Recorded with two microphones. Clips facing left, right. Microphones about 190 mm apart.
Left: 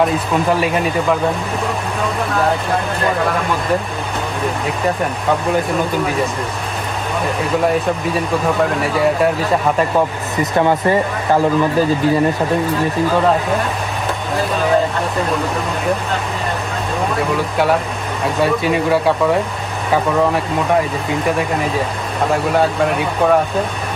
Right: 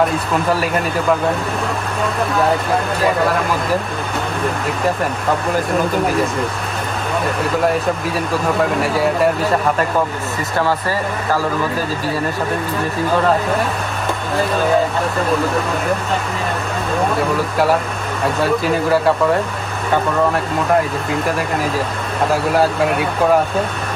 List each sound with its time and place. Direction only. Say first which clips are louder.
0.3 s speech: left 2 dB; centre (ahead or behind)
8.8 s speech: left 2 dB; centre (ahead or behind)
10.6 s speech: left 4 dB; 20° left (ahead or behind)
17.2 s speech: even; centre (ahead or behind)